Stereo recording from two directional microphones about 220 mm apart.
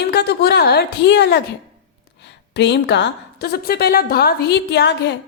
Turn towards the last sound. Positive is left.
turn(degrees=50)  # may be behind; listen again after turning